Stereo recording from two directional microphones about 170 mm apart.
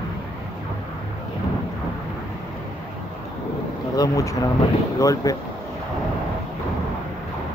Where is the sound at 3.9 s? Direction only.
20° left (ahead or behind).